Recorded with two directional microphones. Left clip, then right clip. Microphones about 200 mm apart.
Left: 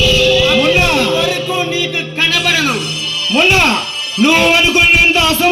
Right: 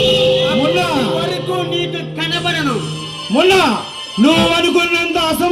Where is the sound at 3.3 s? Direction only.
60° right (ahead or behind).